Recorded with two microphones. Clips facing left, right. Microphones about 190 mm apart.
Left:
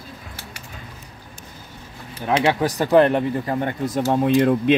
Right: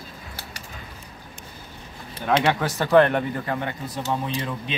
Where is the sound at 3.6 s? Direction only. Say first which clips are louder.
Left 8 dB; 50° left (ahead or behind).